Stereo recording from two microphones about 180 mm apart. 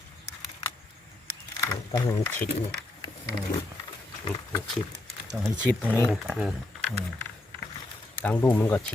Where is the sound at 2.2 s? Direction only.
10° left (ahead or behind).